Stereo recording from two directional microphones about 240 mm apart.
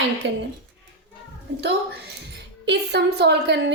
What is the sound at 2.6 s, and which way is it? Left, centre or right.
A woman's voice, right.